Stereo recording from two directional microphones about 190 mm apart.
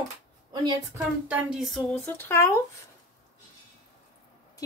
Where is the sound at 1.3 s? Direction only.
5° right (ahead or behind).